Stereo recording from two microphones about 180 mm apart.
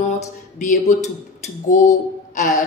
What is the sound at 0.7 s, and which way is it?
A woman's voice, 40° left (ahead or behind).